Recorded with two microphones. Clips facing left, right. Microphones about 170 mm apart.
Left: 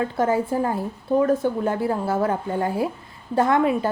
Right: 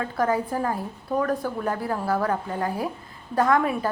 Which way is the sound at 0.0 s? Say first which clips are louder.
Left 3 dB; 25° left (ahead or behind).